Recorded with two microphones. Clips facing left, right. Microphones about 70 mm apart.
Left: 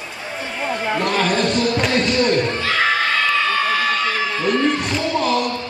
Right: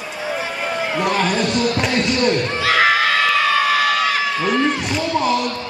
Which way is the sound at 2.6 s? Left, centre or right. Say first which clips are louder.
Right 3 dB; right.